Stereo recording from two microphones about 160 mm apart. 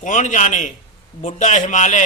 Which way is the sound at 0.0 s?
50° left (ahead or behind).